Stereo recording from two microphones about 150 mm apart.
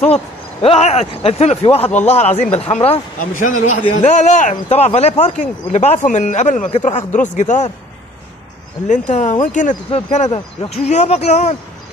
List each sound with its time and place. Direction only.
0.1 s speech: 40° left (ahead or behind)
3.2 s speech: 60° left (ahead or behind)
8.8 s speech: 55° left (ahead or behind)
9.8 s speech: 45° left (ahead or behind)